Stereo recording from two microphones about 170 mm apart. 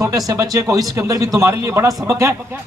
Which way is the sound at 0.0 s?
20° right (ahead or behind).